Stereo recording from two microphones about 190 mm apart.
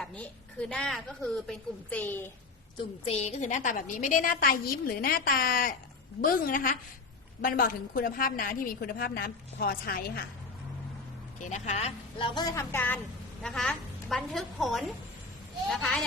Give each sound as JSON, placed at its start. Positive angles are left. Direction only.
{"t": 0.0, "sound": "a woman's voice", "side_deg": 5}
{"t": 3.0, "sound": "a woman's voice", "side_deg": 35}
{"t": 11.4, "sound": "a woman's voice", "side_deg": 40}